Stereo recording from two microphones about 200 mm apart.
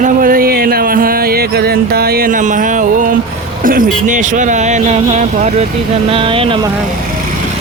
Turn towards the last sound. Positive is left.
turn(degrees=-25)  # may be behind; listen again after turning